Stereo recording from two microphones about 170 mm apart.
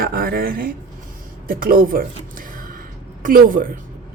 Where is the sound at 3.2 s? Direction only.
55° right (ahead or behind).